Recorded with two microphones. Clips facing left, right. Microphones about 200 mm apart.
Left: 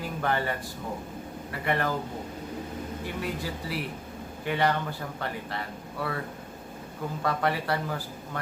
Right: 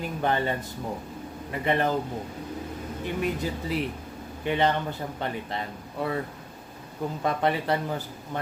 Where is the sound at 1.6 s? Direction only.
20° right (ahead or behind).